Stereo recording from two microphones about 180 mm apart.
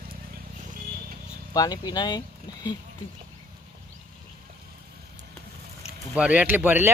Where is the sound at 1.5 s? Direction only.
20° left (ahead or behind).